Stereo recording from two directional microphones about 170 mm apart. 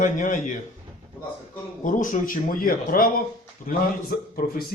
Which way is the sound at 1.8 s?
50° left (ahead or behind).